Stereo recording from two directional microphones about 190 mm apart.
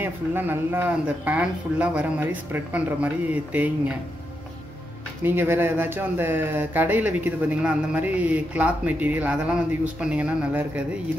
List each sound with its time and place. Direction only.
0.0 s speech: 10° right (ahead or behind)
5.2 s speech: 10° right (ahead or behind)